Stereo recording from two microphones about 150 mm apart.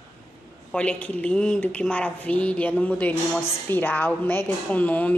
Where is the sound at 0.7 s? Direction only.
5° left (ahead or behind).